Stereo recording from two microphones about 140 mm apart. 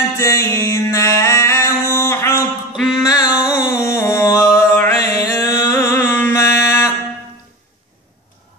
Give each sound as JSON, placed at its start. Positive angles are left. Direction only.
{"t": 0.2, "sound": "music", "side_deg": 20}
{"t": 2.7, "sound": "music", "side_deg": -5}
{"t": 3.6, "sound": "a sound", "side_deg": 20}
{"t": 4.6, "sound": "music", "side_deg": 20}